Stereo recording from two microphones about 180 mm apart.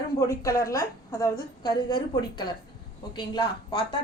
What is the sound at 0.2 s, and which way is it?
A woman's voice, 15° left (ahead or behind).